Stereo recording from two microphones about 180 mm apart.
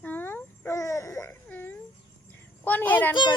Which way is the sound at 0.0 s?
10° left (ahead or behind).